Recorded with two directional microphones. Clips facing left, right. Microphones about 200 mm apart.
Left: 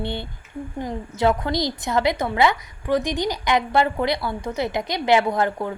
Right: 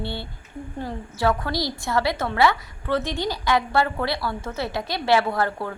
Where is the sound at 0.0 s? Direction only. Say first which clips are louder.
Left 3 dB; 20° left (ahead or behind).